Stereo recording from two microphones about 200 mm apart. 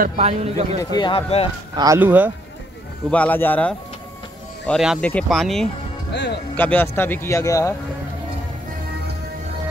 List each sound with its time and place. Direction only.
0.0 s a man's voice: 30° right (ahead or behind)
0.9 s speech: 25° left (ahead or behind)
1.8 s speech: 15° right (ahead or behind)
3.1 s speech: 10° left (ahead or behind)
4.6 s speech: centre (ahead or behind); by 7.7 s 15° left (ahead or behind)